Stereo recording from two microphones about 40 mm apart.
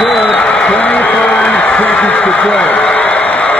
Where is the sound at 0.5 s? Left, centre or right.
Left.